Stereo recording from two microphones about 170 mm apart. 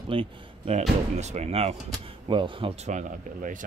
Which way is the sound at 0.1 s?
35° right (ahead or behind).